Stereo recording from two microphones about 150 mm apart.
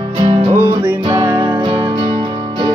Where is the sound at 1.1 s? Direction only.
15° right (ahead or behind).